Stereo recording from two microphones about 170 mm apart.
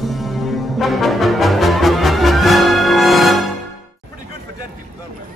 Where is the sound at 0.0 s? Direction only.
Centre (ahead or behind).